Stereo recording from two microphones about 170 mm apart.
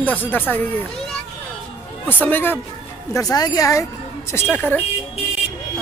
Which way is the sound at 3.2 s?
20° left (ahead or behind).